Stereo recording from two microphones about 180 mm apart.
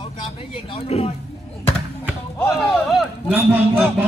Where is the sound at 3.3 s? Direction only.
10° right (ahead or behind).